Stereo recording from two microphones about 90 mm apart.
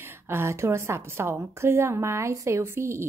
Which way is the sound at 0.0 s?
25° right (ahead or behind).